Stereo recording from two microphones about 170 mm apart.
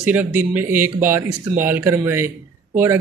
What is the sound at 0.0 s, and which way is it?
Speech, 10° right (ahead or behind).